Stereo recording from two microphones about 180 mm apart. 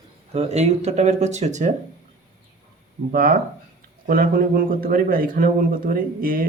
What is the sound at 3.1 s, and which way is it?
Speech, 50° right (ahead or behind).